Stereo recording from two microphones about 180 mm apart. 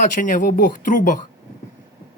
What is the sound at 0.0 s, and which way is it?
Speech, 45° left (ahead or behind).